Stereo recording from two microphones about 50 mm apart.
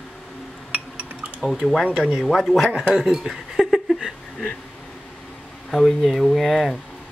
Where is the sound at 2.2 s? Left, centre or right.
Centre.